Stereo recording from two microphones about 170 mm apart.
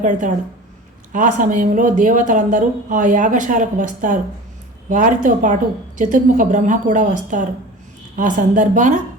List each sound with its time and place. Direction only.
0.0 s speech: 50° right (ahead or behind)